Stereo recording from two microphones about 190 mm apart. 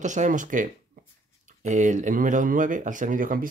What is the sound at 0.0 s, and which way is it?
Speech, 40° right (ahead or behind).